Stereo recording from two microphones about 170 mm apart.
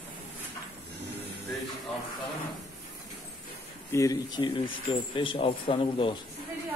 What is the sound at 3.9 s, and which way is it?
Speech, 20° left (ahead or behind).